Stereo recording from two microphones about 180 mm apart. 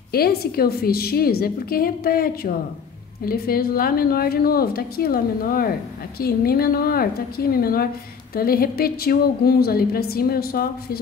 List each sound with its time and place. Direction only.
0.1 s a woman's voice: 60° left (ahead or behind)